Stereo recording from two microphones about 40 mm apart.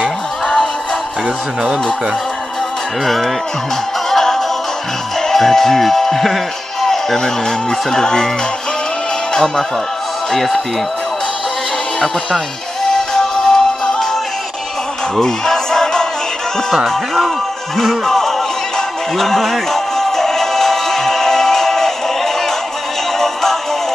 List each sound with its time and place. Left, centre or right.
0.0 s music: centre
4.1 s music: centre
5.2 s speech: centre
9.3 s music: centre
10.3 s speech: centre
13.4 s music: centre
15.1 s music: centre
16.8 s speech: centre
19.1 s music: centre